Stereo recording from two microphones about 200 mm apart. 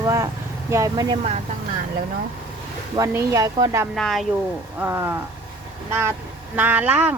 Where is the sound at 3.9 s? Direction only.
Centre (ahead or behind).